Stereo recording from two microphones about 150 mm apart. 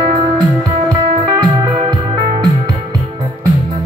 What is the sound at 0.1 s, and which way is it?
Music, 25° right (ahead or behind).